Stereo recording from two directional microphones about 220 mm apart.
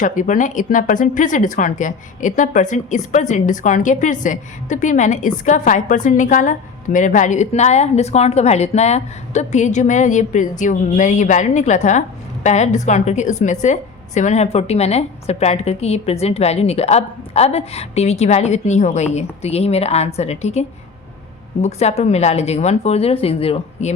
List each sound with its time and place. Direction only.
0.0 s a woman's voice: 35° left (ahead or behind)